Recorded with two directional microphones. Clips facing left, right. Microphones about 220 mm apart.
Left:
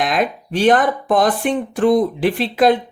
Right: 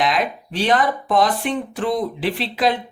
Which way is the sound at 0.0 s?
50° left (ahead or behind).